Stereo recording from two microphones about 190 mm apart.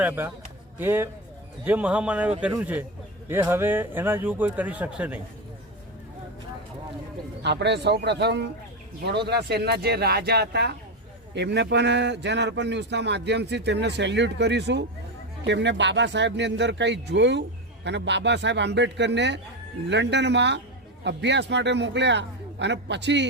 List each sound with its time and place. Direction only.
0.0 s a man's voice: 10° right (ahead or behind)
7.4 s a man's voice: 65° right (ahead or behind)